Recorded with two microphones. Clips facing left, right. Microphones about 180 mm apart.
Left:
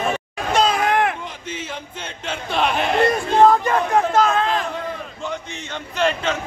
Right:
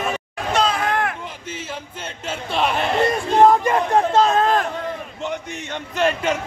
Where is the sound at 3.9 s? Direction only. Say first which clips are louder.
Right 1 dB; 30° right (ahead or behind).